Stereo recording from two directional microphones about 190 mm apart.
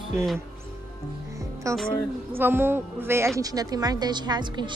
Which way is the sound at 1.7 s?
15° right (ahead or behind).